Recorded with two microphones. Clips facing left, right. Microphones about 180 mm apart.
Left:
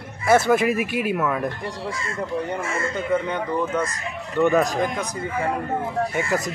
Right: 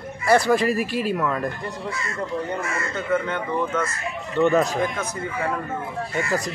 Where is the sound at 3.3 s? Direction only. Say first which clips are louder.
Left 1 dB; 15° left (ahead or behind).